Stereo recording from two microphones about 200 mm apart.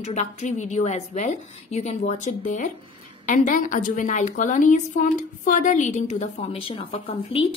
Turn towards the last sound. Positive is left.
turn(degrees=30)  # may be behind; listen again after turning